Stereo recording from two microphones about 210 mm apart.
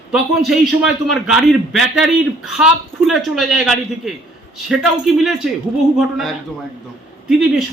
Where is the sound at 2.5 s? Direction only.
5° right (ahead or behind).